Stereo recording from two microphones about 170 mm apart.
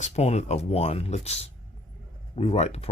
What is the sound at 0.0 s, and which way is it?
Speech, 40° left (ahead or behind).